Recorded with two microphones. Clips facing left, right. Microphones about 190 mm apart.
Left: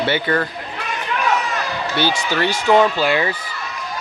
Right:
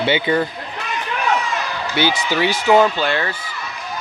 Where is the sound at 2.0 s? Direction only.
15° right (ahead or behind); by 3.3 s 10° left (ahead or behind).